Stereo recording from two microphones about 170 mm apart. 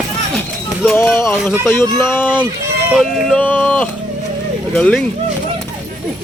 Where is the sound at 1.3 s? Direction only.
5° right (ahead or behind).